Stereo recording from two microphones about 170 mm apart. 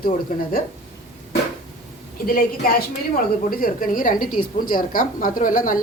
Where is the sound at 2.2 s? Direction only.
55° left (ahead or behind).